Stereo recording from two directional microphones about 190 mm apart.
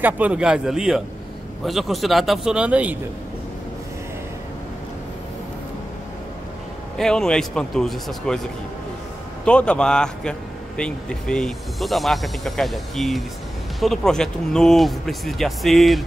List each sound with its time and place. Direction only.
0.0 s speech: 5° right (ahead or behind)
7.0 s speech: 5° left (ahead or behind)
9.4 s speech: 5° left (ahead or behind)